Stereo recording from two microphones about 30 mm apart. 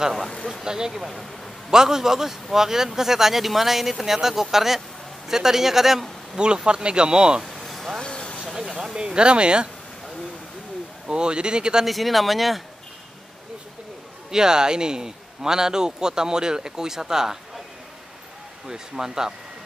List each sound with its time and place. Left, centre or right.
0.7 s a man's voice: right
6.3 s a man's voice: right
7.6 s vehicle: centre
8.0 s vehicle: left
8.5 s a sound: centre
8.9 s speech: right
11.1 s speech: right
11.8 s speech: centre
14.3 s a man's voice: right
18.7 s a man's voice: centre